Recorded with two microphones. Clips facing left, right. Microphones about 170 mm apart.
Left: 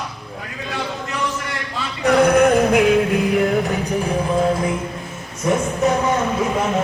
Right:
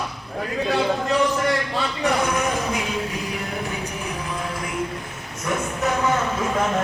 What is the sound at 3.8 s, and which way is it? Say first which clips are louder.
Music: left 9 dB; 30° left (ahead or behind).